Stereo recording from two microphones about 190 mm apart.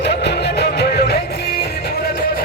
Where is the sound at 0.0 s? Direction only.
60° left (ahead or behind).